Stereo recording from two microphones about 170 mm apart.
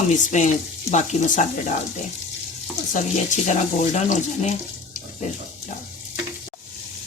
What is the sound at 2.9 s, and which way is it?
Speech, 45° left (ahead or behind).